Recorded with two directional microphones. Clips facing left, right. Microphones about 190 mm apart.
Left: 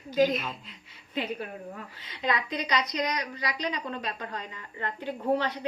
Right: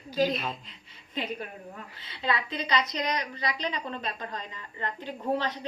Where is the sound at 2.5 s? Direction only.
25° right (ahead or behind).